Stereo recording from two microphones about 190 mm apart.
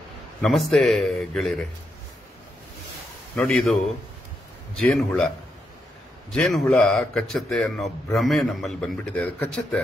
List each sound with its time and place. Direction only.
0.4 s speech: centre (ahead or behind)
3.3 s speech: centre (ahead or behind)
6.3 s speech: 5° left (ahead or behind)